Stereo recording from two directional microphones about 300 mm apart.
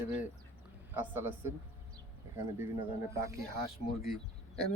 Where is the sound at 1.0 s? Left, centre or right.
Centre.